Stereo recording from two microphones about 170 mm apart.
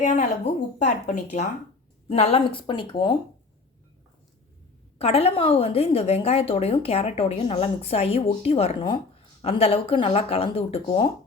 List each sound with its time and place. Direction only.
0.0 s speech: 45° left (ahead or behind); by 3.2 s 30° left (ahead or behind)
4.9 s a woman's voice: 35° left (ahead or behind)